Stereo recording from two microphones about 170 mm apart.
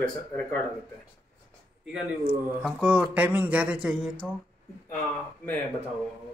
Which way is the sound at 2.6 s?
5° right (ahead or behind).